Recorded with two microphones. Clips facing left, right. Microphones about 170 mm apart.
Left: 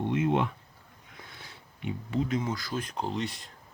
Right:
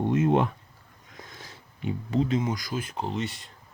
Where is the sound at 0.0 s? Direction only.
45° right (ahead or behind).